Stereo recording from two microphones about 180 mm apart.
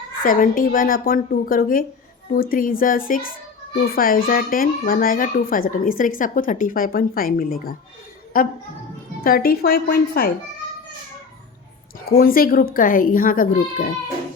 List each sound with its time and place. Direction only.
0.2 s speech: 50° left (ahead or behind)
12.0 s speech: 55° left (ahead or behind)